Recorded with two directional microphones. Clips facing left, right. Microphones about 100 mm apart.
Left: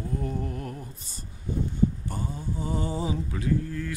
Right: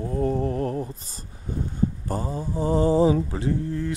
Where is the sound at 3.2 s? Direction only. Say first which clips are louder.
Right 2 dB; 30° right (ahead or behind).